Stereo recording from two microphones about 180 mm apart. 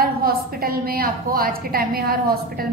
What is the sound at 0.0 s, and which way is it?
A woman's voice, 55° right (ahead or behind).